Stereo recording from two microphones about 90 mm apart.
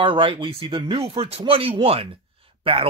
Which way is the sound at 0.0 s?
70° right (ahead or behind).